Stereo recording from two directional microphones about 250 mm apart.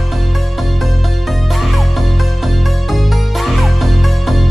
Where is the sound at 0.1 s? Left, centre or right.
Centre.